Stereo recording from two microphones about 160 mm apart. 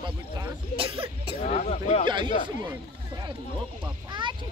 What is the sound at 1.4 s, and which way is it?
Speech, 45° left (ahead or behind).